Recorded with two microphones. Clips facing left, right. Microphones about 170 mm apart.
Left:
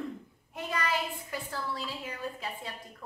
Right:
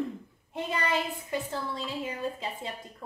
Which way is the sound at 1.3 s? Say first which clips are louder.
Right 4 dB; 25° right (ahead or behind).